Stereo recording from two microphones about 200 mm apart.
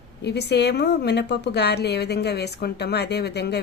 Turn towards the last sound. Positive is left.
turn(degrees=55)  # may be behind; listen again after turning